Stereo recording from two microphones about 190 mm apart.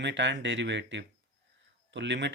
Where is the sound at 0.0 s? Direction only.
70° right (ahead or behind).